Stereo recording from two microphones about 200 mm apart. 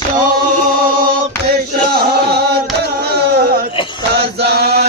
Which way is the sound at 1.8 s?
50° right (ahead or behind).